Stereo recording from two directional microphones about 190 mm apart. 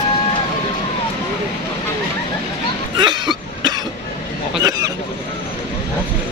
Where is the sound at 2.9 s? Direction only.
20° right (ahead or behind).